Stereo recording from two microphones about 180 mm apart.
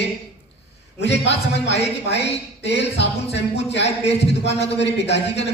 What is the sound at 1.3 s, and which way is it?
Speech, 75° left (ahead or behind).